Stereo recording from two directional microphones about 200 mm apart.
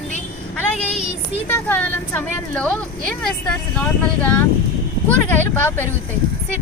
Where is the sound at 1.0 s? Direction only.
25° right (ahead or behind).